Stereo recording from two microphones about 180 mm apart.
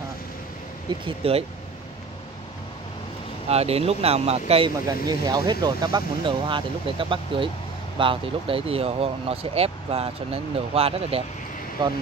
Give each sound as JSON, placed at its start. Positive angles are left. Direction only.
{"t": 1.0, "sound": "speech", "side_deg": -35}
{"t": 3.4, "sound": "speech", "side_deg": -35}